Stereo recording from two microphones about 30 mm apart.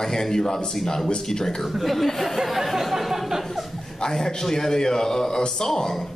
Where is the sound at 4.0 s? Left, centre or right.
Centre.